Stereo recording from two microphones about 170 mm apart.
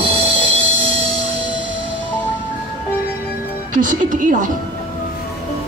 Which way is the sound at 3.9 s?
50° right (ahead or behind).